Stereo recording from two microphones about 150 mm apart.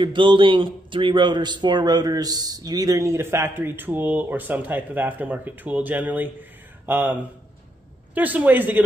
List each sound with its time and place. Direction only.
0.0 s a man's voice: 35° right (ahead or behind); by 8.8 s 10° right (ahead or behind)